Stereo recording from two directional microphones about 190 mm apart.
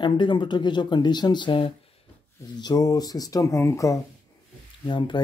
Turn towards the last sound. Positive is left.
turn(degrees=25)  # may be behind; listen again after turning